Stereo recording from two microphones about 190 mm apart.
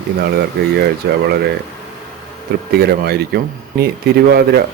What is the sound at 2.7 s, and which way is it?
Speech, 55° right (ahead or behind).